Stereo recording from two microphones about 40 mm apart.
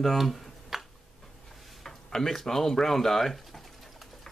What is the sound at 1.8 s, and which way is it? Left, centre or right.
Speech, centre.